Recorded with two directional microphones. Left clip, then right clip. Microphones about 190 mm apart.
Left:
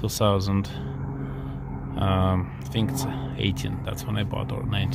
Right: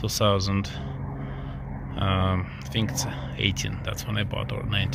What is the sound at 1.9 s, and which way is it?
Speech, 15° left (ahead or behind).